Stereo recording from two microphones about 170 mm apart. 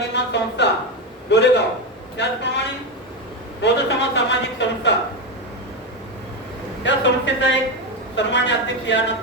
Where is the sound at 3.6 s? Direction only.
90° left.